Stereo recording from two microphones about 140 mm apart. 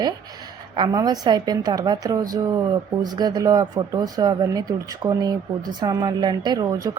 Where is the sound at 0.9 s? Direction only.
30° right (ahead or behind).